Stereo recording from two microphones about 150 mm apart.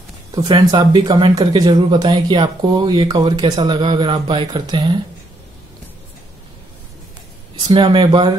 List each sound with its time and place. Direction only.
0.3 s speech: 25° right (ahead or behind)
7.5 s speech: 30° right (ahead or behind)